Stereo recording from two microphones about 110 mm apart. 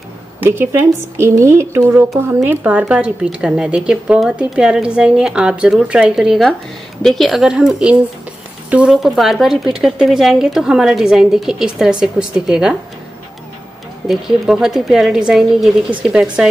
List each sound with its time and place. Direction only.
0.4 s speech: 20° right (ahead or behind)
2.5 s a woman's voice: 15° right (ahead or behind)
8.9 s speech: centre (ahead or behind)
14.0 s a woman's voice: 5° right (ahead or behind)